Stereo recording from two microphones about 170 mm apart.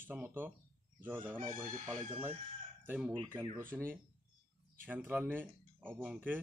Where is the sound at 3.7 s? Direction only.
10° right (ahead or behind).